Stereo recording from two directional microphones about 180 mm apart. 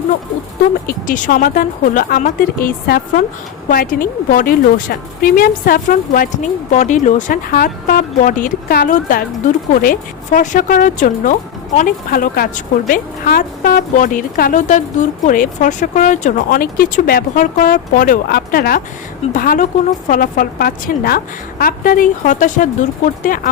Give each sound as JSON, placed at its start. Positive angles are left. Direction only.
{"t": 0.9, "sound": "a woman's voice", "side_deg": 50}